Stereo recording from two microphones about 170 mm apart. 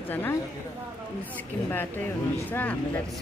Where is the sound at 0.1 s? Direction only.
10° left (ahead or behind).